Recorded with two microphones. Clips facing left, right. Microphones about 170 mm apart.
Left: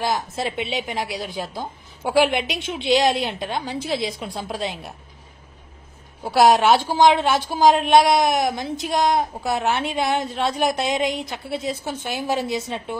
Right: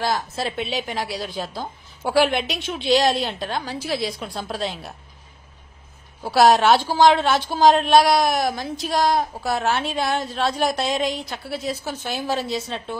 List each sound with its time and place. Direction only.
0.0 s a woman's voice: 15° left (ahead or behind)
6.2 s a woman's voice: 15° left (ahead or behind)